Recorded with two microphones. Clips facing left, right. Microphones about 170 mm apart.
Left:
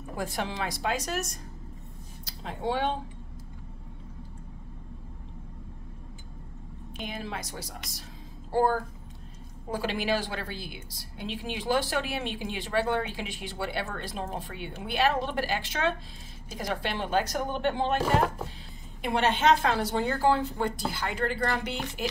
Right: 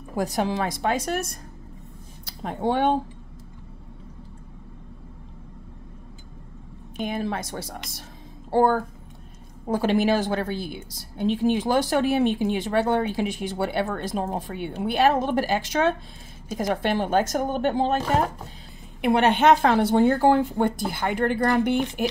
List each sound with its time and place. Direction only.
0.1 s speech: 40° right (ahead or behind)
2.2 s speech: 55° right (ahead or behind)
7.0 s speech: 55° right (ahead or behind)
9.7 s speech: 50° right (ahead or behind)
18.9 s speech: 60° right (ahead or behind)